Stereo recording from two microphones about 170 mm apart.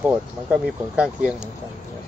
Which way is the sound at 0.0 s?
10° right (ahead or behind).